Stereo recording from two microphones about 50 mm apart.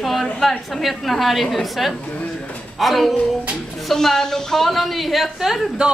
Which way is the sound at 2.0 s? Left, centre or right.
Left.